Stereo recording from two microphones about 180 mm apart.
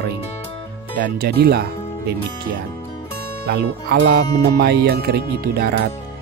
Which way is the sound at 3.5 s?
60° right (ahead or behind).